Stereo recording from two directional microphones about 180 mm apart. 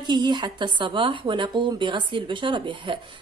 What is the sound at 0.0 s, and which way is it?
Speech, 25° right (ahead or behind).